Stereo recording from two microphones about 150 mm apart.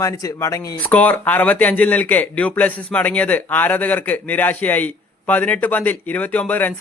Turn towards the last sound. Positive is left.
turn(degrees=10)  # may be behind; listen again after turning